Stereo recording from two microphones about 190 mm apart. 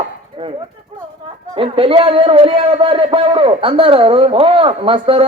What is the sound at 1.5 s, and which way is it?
A man's voice, 30° right (ahead or behind).